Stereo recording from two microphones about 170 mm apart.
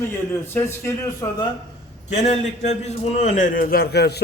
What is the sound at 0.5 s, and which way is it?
Speech, 15° left (ahead or behind).